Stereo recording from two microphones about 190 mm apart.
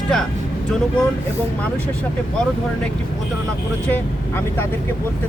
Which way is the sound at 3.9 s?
10° left (ahead or behind).